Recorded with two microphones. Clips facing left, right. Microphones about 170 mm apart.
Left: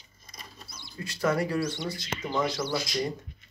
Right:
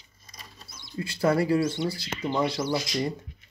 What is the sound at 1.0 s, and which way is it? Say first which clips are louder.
Speech: right 3 dB; 30° right (ahead or behind).